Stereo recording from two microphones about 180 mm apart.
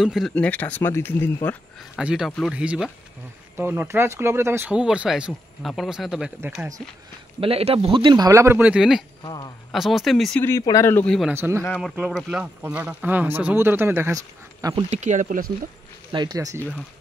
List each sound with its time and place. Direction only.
0.0 s speech: centre (ahead or behind)
2.0 s speech: 5° right (ahead or behind)
7.3 s speech: 30° right (ahead or behind); by 9.0 s 5° right (ahead or behind)
9.2 s speech: 25° left (ahead or behind)
9.7 s speech: centre (ahead or behind)
10.4 s speech: 15° left (ahead or behind)
11.1 s speech: 10° right (ahead or behind)
11.6 s speech: 10° left (ahead or behind); by 14.9 s 20° right (ahead or behind)
14.9 s speech: 40° right (ahead or behind)
16.1 s speech: 25° right (ahead or behind)